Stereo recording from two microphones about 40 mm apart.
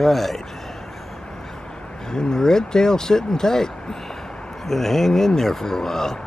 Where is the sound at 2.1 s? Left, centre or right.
Centre.